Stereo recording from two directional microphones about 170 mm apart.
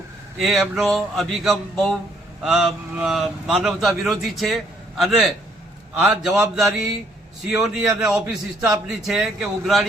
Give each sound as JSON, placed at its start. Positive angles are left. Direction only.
{"t": 0.3, "sound": "a man's voice", "side_deg": 0}